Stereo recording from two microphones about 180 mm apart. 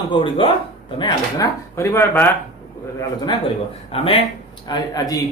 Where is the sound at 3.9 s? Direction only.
30° left (ahead or behind).